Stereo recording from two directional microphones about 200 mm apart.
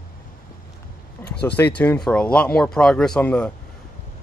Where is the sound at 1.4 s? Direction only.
10° left (ahead or behind).